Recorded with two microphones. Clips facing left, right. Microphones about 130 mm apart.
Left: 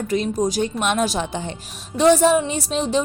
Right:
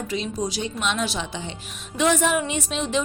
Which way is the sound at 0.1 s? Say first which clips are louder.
Left 8 dB; 50° left (ahead or behind).